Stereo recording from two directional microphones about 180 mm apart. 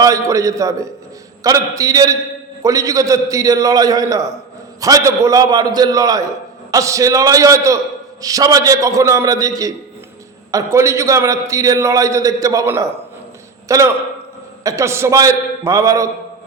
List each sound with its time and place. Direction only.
0.0 s a man's voice: 20° right (ahead or behind)